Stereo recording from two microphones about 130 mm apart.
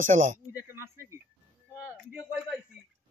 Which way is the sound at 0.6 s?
20° right (ahead or behind).